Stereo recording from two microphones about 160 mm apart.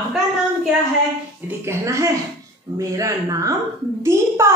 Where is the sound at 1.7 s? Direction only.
15° right (ahead or behind).